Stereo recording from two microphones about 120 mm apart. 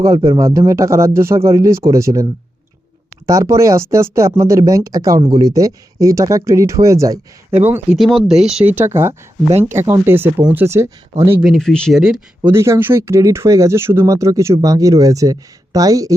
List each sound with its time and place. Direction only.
0.3 s speech: 25° right (ahead or behind)
3.2 s speech: 25° right (ahead or behind)
7.5 s speech: 15° right (ahead or behind)
7.9 s speech: centre (ahead or behind)
8.6 s speech: 15° right (ahead or behind)
9.5 s speech: 65° right (ahead or behind)
9.7 s speech: 25° right (ahead or behind)
11.4 s speech: 5° left (ahead or behind)
11.9 s speech: 5° right (ahead or behind)
12.4 s speech: 25° right (ahead or behind)